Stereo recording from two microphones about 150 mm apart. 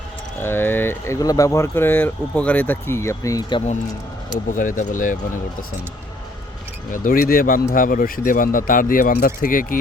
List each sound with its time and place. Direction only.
0.4 s speech: 15° left (ahead or behind)
4.4 s speech: 60° left (ahead or behind)
6.9 s speech: 65° left (ahead or behind)